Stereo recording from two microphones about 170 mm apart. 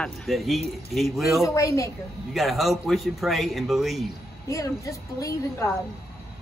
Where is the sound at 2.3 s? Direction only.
Centre (ahead or behind).